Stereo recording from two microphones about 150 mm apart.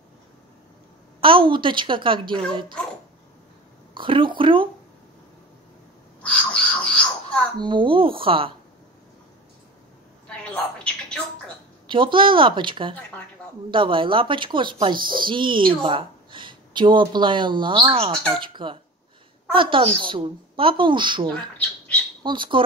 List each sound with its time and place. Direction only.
1.2 s speech: 35° right (ahead or behind)
3.9 s speech: 35° right (ahead or behind)
6.2 s a sound: 10° left (ahead or behind)
7.5 s speech: 30° right (ahead or behind)
10.2 s a sound: 5° left (ahead or behind)
11.9 s speech: 35° right (ahead or behind)